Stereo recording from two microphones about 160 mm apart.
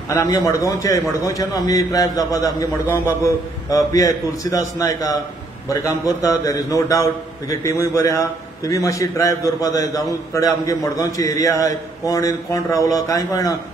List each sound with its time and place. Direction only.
0.1 s a man's voice: 20° left (ahead or behind)